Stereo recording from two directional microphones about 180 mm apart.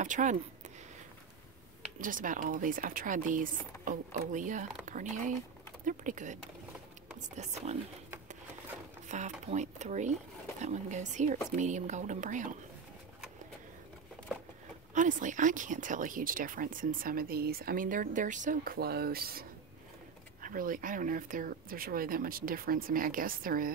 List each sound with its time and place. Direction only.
0.0 s speech: 45° right (ahead or behind)
2.0 s speech: 50° right (ahead or behind)
9.1 s speech: 40° right (ahead or behind)
15.0 s speech: 45° right (ahead or behind)
20.4 s speech: 50° right (ahead or behind)